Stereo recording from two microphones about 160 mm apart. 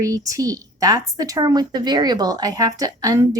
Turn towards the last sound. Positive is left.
turn(degrees=-20)  # may be behind; listen again after turning